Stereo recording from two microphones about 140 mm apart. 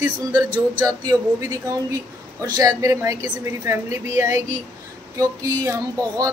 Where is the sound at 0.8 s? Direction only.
25° right (ahead or behind).